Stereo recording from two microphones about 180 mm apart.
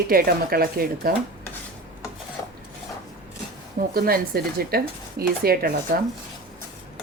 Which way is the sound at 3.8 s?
55° right (ahead or behind).